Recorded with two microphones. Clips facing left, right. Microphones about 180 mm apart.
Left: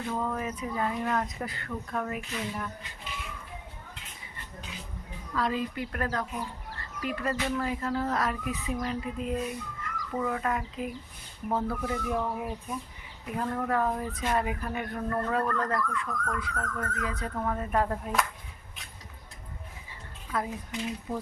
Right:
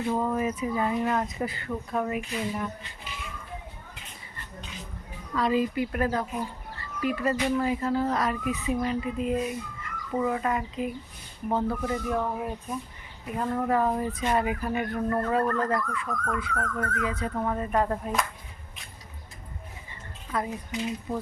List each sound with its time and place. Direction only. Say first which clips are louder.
0.2 s speech: right 5 dB; 10° right (ahead or behind)
5.3 s a woman's voice: right 5 dB; 5° right (ahead or behind)
7.3 s a woman's voice: right 5 dB; 15° right (ahead or behind)
7.6 s a woman's voice: right 4 dB; 5° right (ahead or behind)
19.9 s speech: right 2 dB; centre (ahead or behind)